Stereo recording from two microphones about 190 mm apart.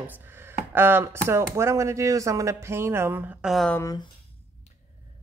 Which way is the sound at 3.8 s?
20° left (ahead or behind).